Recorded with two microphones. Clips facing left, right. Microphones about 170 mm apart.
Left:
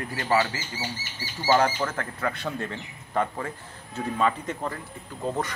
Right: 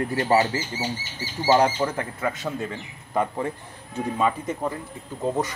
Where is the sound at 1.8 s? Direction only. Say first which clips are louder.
Right 3 dB; 10° right (ahead or behind).